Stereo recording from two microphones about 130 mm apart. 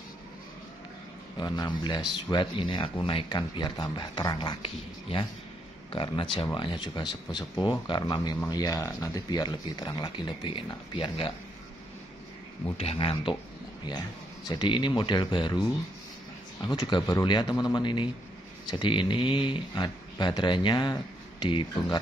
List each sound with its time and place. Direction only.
1.4 s speech: 35° left (ahead or behind)
12.7 s speech: 45° left (ahead or behind)
14.5 s speech: 35° left (ahead or behind)